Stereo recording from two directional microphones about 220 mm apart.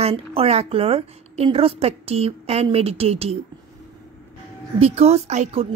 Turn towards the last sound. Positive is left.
turn(degrees=-30)  # may be behind; listen again after turning